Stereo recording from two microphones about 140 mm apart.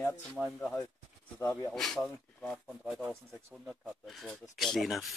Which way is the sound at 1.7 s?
Centre (ahead or behind).